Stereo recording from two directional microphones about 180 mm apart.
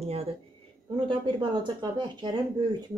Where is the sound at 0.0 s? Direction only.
35° right (ahead or behind).